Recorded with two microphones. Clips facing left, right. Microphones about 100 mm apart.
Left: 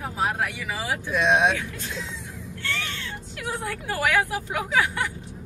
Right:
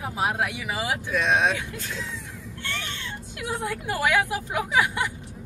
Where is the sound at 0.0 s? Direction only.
10° right (ahead or behind).